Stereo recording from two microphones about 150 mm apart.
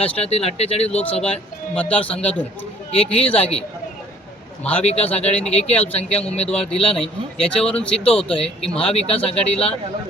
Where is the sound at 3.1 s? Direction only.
40° left (ahead or behind).